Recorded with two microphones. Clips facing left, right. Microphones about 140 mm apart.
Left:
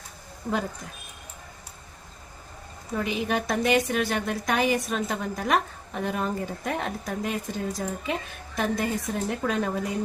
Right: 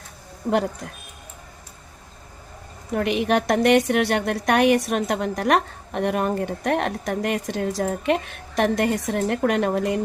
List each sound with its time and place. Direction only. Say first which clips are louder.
2.9 s a woman's voice: right 6 dB; 70° right (ahead or behind)